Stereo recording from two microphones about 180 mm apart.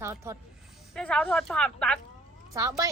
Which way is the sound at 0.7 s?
5° left (ahead or behind).